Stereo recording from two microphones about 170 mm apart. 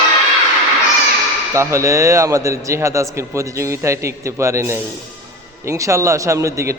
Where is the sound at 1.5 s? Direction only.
15° right (ahead or behind).